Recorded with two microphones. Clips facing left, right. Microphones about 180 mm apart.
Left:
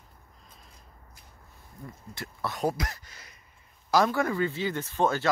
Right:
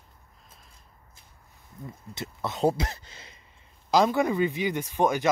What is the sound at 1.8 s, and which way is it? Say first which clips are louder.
A man's voice: right 3 dB; 20° right (ahead or behind).